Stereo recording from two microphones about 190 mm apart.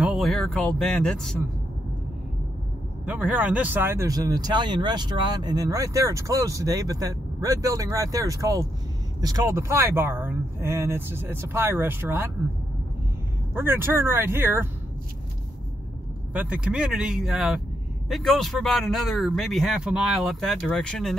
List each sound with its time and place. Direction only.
0.0 s speech: centre (ahead or behind)
3.1 s speech: 5° right (ahead or behind)
13.6 s speech: 10° right (ahead or behind)
16.3 s a man's voice: 5° right (ahead or behind)